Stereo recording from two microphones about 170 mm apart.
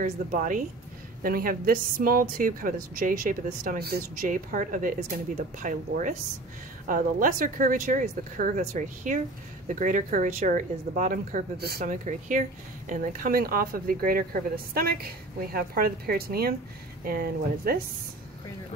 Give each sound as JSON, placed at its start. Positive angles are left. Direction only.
{"t": 0.0, "sound": "a woman's voice", "side_deg": -50}
{"t": 11.5, "sound": "speech", "side_deg": -65}
{"t": 11.8, "sound": "speech", "side_deg": -45}